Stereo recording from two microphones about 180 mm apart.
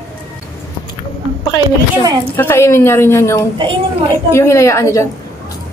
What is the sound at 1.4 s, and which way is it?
A woman's voice, 25° left (ahead or behind).